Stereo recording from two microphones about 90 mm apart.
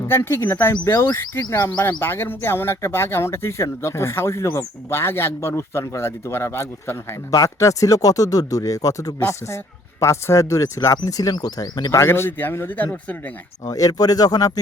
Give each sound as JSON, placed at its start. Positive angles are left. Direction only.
{"t": 0.1, "sound": "speech", "side_deg": 30}
{"t": 12.0, "sound": "speech", "side_deg": 25}
{"t": 13.7, "sound": "speech", "side_deg": 40}